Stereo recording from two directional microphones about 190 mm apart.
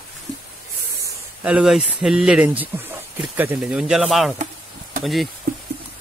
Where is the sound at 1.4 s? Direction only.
5° right (ahead or behind).